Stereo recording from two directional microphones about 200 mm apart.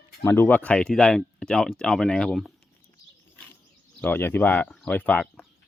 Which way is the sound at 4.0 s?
10° left (ahead or behind).